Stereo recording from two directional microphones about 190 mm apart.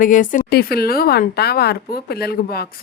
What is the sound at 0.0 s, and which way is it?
A woman's voice, 45° left (ahead or behind).